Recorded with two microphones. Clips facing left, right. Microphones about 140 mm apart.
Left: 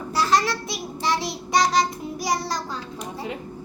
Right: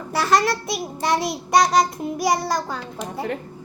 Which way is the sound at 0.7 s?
55° right (ahead or behind).